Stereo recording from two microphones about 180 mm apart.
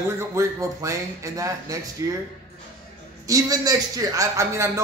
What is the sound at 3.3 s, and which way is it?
A man's voice, 20° right (ahead or behind).